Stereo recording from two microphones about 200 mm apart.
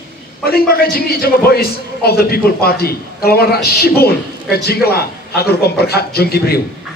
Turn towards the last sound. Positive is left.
turn(degrees=50)  # may be behind; listen again after turning